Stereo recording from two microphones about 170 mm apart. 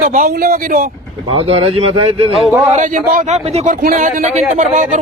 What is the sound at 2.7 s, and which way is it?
Speech, 50° right (ahead or behind).